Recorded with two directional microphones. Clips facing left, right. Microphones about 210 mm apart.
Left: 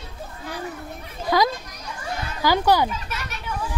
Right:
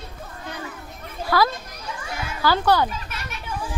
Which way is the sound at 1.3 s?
20° left (ahead or behind).